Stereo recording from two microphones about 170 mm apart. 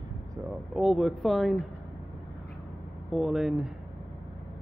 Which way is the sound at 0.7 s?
Centre (ahead or behind).